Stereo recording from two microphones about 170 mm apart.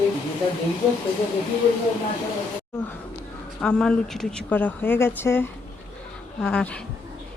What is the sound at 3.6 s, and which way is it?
Speech, 5° left (ahead or behind).